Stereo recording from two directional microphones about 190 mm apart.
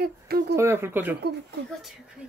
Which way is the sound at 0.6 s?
15° right (ahead or behind).